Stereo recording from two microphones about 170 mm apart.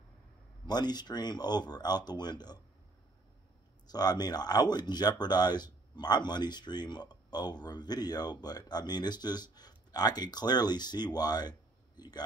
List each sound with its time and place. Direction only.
0.7 s speech: 25° left (ahead or behind)
3.8 s a man's voice: 25° left (ahead or behind)